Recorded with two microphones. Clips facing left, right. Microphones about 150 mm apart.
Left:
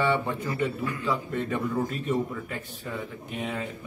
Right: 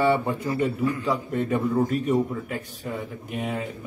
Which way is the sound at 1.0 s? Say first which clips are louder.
Right 3 dB; 40° right (ahead or behind).